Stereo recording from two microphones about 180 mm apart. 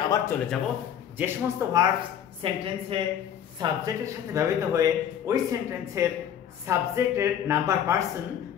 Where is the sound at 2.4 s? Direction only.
30° right (ahead or behind).